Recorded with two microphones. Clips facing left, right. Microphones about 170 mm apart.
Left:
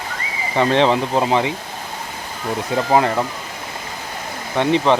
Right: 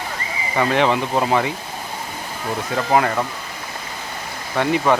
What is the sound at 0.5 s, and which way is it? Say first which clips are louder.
Speech: left 2 dB; 25° left (ahead or behind).